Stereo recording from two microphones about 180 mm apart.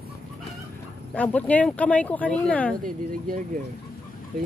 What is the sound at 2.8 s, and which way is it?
Speech, 50° right (ahead or behind).